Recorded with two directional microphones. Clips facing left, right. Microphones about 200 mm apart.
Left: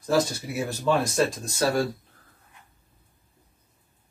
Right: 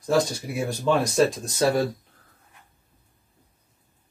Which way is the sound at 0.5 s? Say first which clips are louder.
Right 1 dB; 5° left (ahead or behind).